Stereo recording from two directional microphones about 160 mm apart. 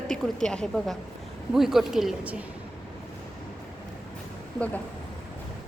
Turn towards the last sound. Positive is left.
turn(degrees=10)  # may be behind; listen again after turning